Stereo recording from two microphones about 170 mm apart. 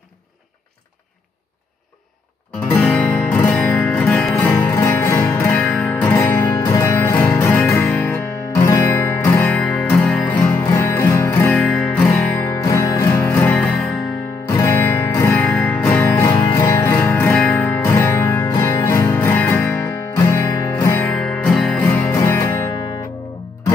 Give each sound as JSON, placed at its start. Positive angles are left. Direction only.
{"t": 2.8, "sound": "music", "side_deg": 5}
{"t": 4.4, "sound": "music", "side_deg": 15}
{"t": 11.6, "sound": "music", "side_deg": 5}
{"t": 12.1, "sound": "music", "side_deg": 15}